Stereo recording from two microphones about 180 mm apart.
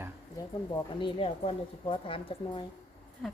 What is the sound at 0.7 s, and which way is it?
A woman's voice, 25° left (ahead or behind).